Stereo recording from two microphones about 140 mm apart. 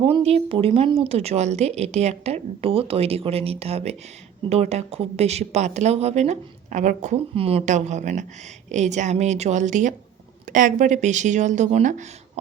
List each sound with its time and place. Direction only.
0.0 s speech: 40° right (ahead or behind); by 7.2 s 60° right (ahead or behind)
7.3 s speech: 45° right (ahead or behind)
7.6 s a woman's voice: 60° right (ahead or behind)